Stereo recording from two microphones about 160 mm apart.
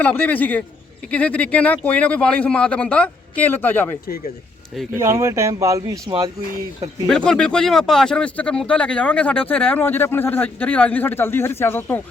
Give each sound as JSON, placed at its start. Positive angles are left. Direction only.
{"t": 0.0, "sound": "speech", "side_deg": 10}
{"t": 4.9, "sound": "speech", "side_deg": -20}
{"t": 7.1, "sound": "speech", "side_deg": 5}